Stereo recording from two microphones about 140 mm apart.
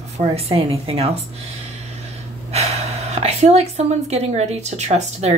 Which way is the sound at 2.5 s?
50° right (ahead or behind).